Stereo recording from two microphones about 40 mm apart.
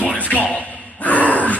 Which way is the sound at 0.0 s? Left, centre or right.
Left.